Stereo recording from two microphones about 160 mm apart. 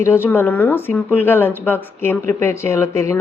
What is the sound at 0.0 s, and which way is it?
A woman's voice, 15° left (ahead or behind).